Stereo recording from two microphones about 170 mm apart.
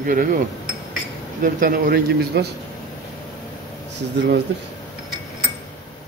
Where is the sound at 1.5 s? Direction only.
55° right (ahead or behind).